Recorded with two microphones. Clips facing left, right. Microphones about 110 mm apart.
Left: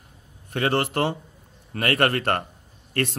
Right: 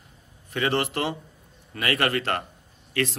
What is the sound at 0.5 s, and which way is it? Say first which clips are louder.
A man's voice: left 2 dB; 50° left (ahead or behind).